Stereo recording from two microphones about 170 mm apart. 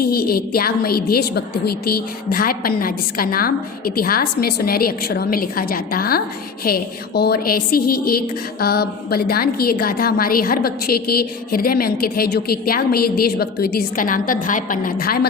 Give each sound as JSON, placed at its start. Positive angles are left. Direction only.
{"t": 0.0, "sound": "a woman's voice", "side_deg": 65}